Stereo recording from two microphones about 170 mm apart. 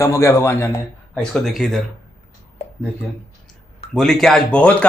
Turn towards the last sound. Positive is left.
turn(degrees=5)  # may be behind; listen again after turning